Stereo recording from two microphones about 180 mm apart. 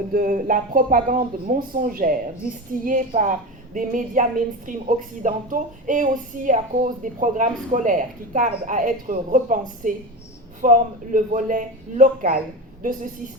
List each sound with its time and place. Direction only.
0.1 s a woman's voice: 50° right (ahead or behind)